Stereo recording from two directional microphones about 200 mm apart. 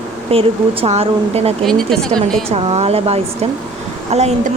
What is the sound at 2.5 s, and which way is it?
Speech, 30° right (ahead or behind).